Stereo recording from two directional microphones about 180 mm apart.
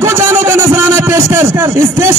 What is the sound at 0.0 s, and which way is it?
A man's voice, 15° right (ahead or behind).